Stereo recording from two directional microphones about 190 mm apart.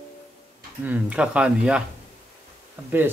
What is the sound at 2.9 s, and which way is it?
Speech, 10° right (ahead or behind).